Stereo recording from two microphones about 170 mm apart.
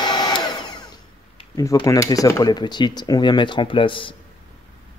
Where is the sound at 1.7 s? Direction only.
20° left (ahead or behind).